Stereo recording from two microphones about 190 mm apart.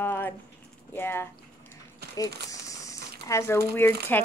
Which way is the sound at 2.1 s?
20° left (ahead or behind).